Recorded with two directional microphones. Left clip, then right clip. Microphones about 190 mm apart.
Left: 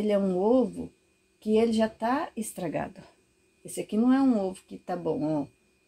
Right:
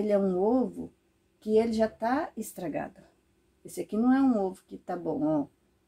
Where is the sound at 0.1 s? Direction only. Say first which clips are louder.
Left 2 dB; 20° left (ahead or behind).